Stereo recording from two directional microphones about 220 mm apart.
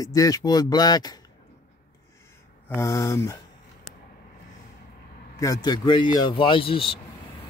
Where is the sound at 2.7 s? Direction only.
10° left (ahead or behind).